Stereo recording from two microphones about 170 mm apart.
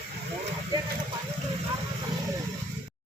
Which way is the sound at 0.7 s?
25° right (ahead or behind).